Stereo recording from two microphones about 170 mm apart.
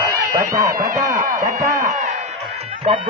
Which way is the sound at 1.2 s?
50° right (ahead or behind).